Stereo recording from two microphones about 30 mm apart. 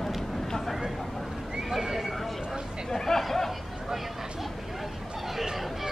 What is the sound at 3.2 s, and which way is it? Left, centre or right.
Chatter, centre.